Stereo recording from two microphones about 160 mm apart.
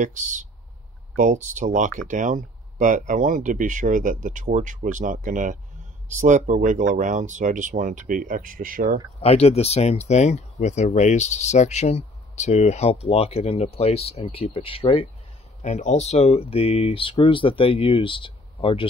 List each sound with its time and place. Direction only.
0.0 s speech: 50° right (ahead or behind)
9.2 s speech: 40° left (ahead or behind)
15.6 s speech: 50° left (ahead or behind)